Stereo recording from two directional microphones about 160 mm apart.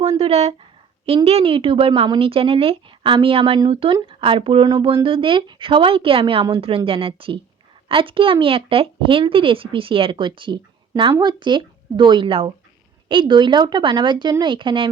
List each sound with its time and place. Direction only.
0.0 s speech: 40° right (ahead or behind)